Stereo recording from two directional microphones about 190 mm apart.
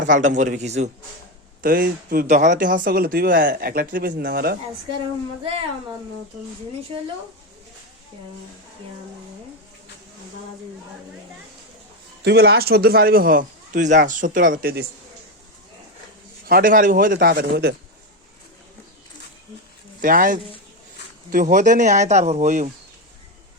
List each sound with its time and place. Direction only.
0.0 s speech: 40° right (ahead or behind)
1.6 s speech: 50° right (ahead or behind)
12.2 s speech: 60° right (ahead or behind)
16.5 s speech: 50° right (ahead or behind)
20.0 s speech: 45° right (ahead or behind)